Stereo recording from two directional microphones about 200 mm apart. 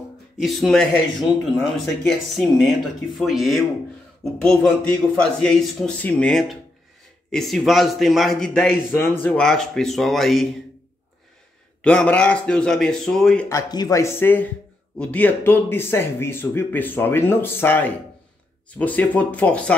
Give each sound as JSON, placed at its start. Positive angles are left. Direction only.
{"t": 0.4, "sound": "a man's voice", "side_deg": 0}
{"t": 2.0, "sound": "a man's voice", "side_deg": 0}
{"t": 11.8, "sound": "a man's voice", "side_deg": 5}
{"t": 13.5, "sound": "speech", "side_deg": 20}